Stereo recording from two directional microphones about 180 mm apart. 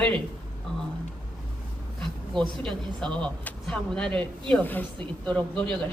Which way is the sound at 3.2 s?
5° left (ahead or behind).